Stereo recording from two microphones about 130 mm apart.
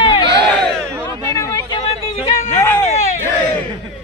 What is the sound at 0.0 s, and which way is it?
Crowd, 40° left (ahead or behind).